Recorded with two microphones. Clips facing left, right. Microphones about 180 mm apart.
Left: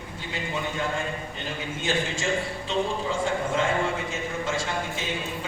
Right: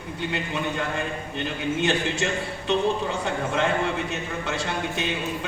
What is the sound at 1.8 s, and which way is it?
A man's voice, 65° right (ahead or behind).